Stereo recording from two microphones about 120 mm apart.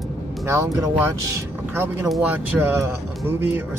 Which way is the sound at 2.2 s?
15° right (ahead or behind).